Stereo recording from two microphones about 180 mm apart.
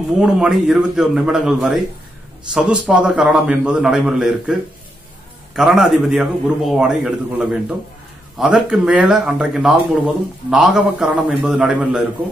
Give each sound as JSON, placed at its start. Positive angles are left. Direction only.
{"t": 0.2, "sound": "speech", "side_deg": -5}